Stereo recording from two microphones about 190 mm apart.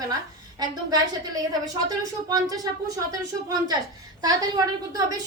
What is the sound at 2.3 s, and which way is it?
A woman's voice, 20° right (ahead or behind).